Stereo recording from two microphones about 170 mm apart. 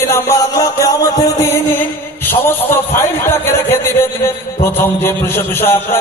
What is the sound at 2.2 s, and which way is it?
A man's voice, 10° left (ahead or behind).